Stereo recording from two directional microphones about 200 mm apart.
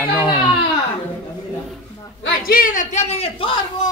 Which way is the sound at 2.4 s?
45° left (ahead or behind).